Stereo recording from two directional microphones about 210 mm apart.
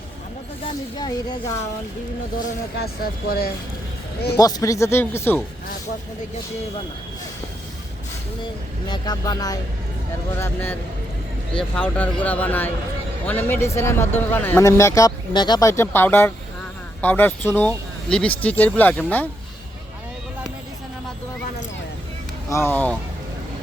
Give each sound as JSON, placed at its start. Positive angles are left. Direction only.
{"t": 0.6, "sound": "speech", "side_deg": 20}
{"t": 2.7, "sound": "speech", "side_deg": 45}
{"t": 4.4, "sound": "a man's voice", "side_deg": 15}
{"t": 8.9, "sound": "a man's voice", "side_deg": 20}
{"t": 22.4, "sound": "a man's voice", "side_deg": 10}